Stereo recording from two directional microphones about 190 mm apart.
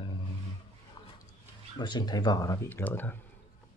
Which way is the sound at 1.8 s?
20° left (ahead or behind).